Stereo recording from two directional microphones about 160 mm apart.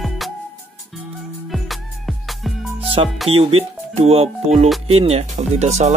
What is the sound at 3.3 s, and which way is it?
Speech, 35° right (ahead or behind).